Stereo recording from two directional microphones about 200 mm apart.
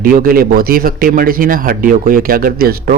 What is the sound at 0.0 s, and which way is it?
A man's voice, 45° right (ahead or behind).